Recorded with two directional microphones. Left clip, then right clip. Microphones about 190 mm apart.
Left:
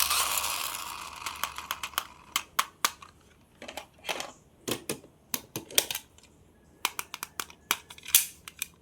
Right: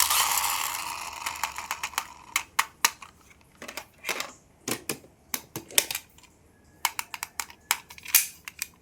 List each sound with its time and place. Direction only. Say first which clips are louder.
0.0 s mechanisms: right 4 dB; 5° right (ahead or behind)
3.6 s crushing: right 3 dB; 15° right (ahead or behind)
4.7 s typewriter: right 1 dB; 10° right (ahead or behind)
5.5 s a sound: right 2 dB; centre (ahead or behind)